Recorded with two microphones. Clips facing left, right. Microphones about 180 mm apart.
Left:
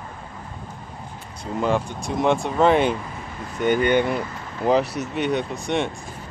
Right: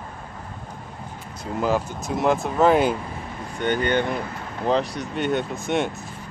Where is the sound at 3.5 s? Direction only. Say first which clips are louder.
Left 3 dB; 10° left (ahead or behind).